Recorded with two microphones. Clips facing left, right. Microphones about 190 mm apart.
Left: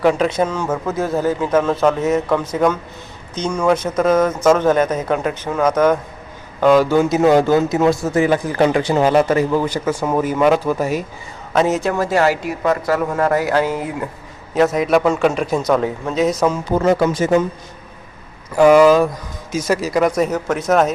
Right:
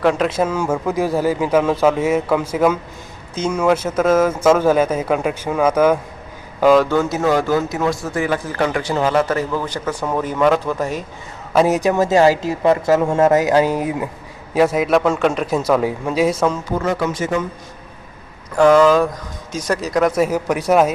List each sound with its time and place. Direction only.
0.0 s a man's voice: centre (ahead or behind)
6.9 s a man's voice: 15° left (ahead or behind)
11.5 s a man's voice: 10° right (ahead or behind)
16.8 s speech: 30° left (ahead or behind)
18.5 s a man's voice: 10° left (ahead or behind); by 20.9 s 10° right (ahead or behind)